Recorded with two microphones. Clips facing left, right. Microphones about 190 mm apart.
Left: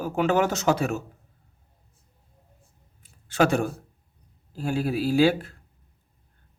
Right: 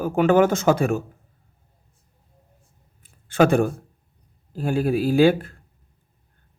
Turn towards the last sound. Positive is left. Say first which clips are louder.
# right 4 dB
turn(degrees=-50)  # may be behind; listen again after turning